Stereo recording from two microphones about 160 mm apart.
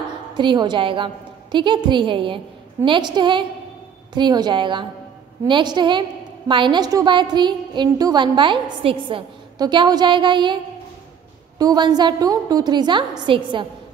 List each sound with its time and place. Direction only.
0.4 s a woman's voice: 30° right (ahead or behind)